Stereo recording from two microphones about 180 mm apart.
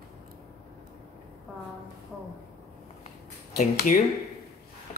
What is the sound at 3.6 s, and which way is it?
Speech, 45° left (ahead or behind).